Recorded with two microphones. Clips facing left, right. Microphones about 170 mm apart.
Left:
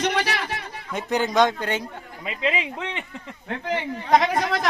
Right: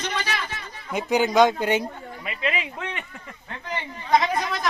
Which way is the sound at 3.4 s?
65° left (ahead or behind).